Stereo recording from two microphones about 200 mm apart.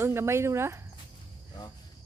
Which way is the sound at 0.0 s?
15° right (ahead or behind).